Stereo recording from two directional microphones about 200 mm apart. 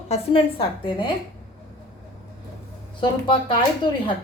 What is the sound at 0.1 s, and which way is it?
Speech, 30° left (ahead or behind).